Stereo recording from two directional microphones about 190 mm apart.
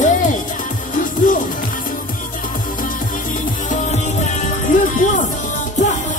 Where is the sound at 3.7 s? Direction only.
40° left (ahead or behind).